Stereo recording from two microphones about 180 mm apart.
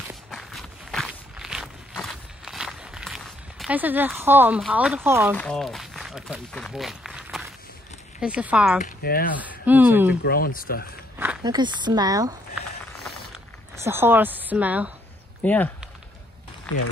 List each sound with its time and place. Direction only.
0.3 s walk: centre (ahead or behind)
4.2 s speech: 10° right (ahead or behind)
5.3 s speech: 5° left (ahead or behind)
8.8 s speech: 55° left (ahead or behind)
9.4 s speech: 10° right (ahead or behind)
10.2 s speech: 55° left (ahead or behind)
11.4 s speech: 25° right (ahead or behind)
13.8 s speech: 10° right (ahead or behind)
15.4 s speech: 10° left (ahead or behind)